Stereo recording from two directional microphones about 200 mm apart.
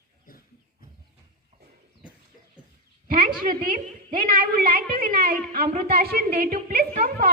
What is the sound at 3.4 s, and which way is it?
A woman's voice, 45° right (ahead or behind).